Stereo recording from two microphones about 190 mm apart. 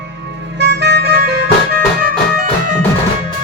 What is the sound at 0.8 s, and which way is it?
Music, 60° right (ahead or behind).